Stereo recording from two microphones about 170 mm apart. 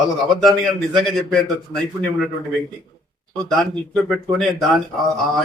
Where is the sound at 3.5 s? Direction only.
Centre (ahead or behind).